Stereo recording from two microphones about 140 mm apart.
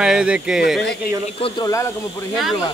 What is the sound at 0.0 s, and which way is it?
Speech, 5° right (ahead or behind).